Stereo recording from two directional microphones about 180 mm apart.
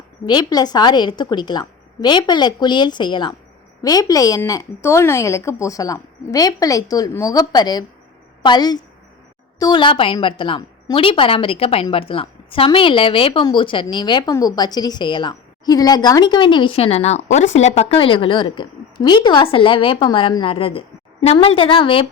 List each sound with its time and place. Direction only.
0.3 s a woman's voice: 25° left (ahead or behind)